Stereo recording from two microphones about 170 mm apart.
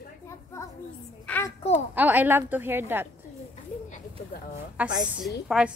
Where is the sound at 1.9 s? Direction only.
10° right (ahead or behind).